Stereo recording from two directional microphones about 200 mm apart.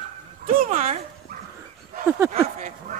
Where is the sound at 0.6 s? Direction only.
35° right (ahead or behind).